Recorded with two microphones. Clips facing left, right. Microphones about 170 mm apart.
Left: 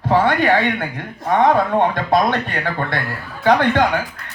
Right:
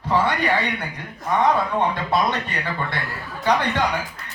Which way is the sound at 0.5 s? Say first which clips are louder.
Left 6 dB; 50° left (ahead or behind).